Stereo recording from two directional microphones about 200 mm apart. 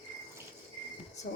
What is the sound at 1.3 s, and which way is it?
Speech, 45° left (ahead or behind).